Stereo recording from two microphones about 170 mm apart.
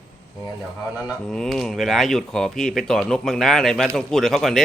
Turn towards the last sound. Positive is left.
turn(degrees=0)  # may be behind; listen again after turning